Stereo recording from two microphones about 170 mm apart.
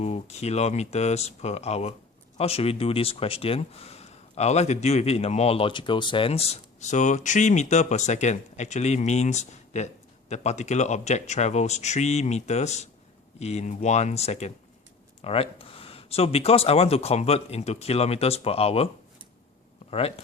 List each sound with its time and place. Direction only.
0.0 s speech: 40° left (ahead or behind)
19.9 s speech: 35° left (ahead or behind)